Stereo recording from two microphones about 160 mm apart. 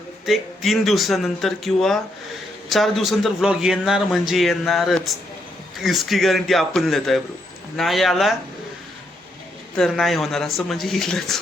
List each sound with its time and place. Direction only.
0.3 s a man's voice: centre (ahead or behind)
9.7 s a man's voice: centre (ahead or behind)